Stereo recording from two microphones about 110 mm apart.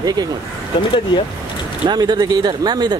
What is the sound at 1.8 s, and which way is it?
Speech, 40° right (ahead or behind).